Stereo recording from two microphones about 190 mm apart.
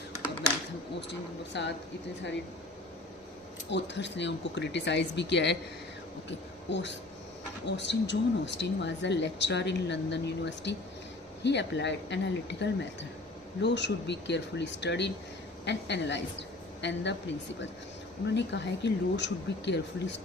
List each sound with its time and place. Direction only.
1.5 s speech: 65° left (ahead or behind)
3.7 s a woman's voice: 65° left (ahead or behind)
18.3 s speech: 70° left (ahead or behind)